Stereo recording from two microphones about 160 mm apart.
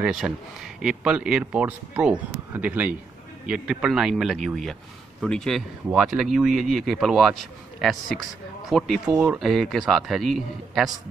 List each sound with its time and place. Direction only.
0.0 s speech: centre (ahead or behind)
9.0 s speech: 20° right (ahead or behind)
9.3 s speech: centre (ahead or behind)